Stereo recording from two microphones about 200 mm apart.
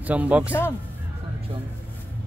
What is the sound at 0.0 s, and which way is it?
Speech, 5° right (ahead or behind).